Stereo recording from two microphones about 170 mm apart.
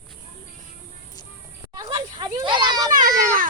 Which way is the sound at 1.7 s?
20° right (ahead or behind).